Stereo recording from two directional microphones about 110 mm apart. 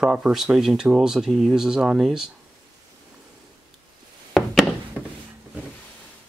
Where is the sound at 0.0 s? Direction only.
5° right (ahead or behind).